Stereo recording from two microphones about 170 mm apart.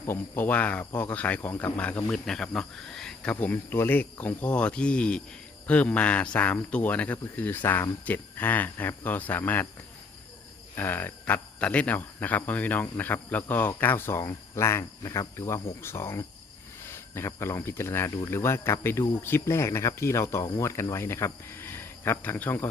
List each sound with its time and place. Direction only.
0.0 s speech: 10° left (ahead or behind)
10.8 s speech: 10° left (ahead or behind)